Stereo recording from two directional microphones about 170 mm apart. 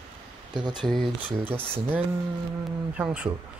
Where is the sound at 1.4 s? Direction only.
10° right (ahead or behind).